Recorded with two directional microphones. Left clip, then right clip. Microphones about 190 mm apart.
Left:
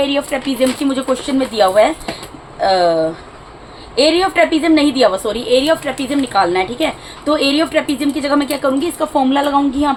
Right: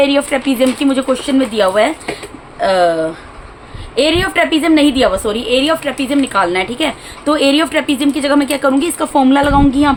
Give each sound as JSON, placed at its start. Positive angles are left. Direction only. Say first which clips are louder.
{"t": 0.0, "sound": "speech", "louder": "right 4 dB", "side_deg": -40}
{"t": 0.9, "sound": "a woman's voice", "louder": "right 3 dB", "side_deg": -20}